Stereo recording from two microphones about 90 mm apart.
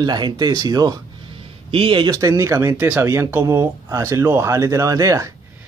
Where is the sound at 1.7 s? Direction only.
75° right (ahead or behind).